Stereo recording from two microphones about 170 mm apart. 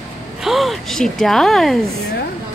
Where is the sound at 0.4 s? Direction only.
Centre (ahead or behind).